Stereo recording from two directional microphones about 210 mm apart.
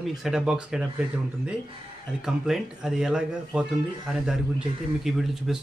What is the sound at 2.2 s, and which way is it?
Speech, centre (ahead or behind).